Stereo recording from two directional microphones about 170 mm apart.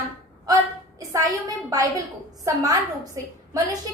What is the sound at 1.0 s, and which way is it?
A woman's voice, 20° right (ahead or behind).